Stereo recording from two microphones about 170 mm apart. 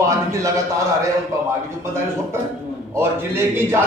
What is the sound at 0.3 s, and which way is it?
Speech, 20° right (ahead or behind).